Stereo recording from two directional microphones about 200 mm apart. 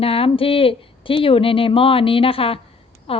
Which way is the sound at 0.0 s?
30° left (ahead or behind).